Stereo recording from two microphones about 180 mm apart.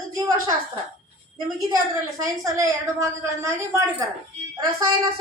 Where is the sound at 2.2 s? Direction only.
20° right (ahead or behind).